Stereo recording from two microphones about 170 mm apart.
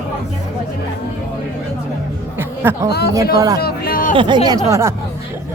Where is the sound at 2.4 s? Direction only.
15° right (ahead or behind).